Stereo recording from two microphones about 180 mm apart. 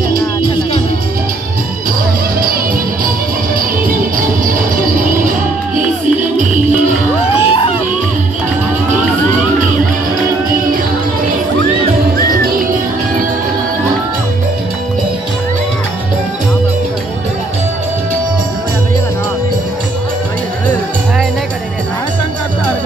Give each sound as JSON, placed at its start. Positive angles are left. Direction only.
{"t": 3.5, "sound": "music", "side_deg": -50}
{"t": 6.3, "sound": "music", "side_deg": -45}
{"t": 7.3, "sound": "a sound", "side_deg": 30}
{"t": 12.3, "sound": "music", "side_deg": -55}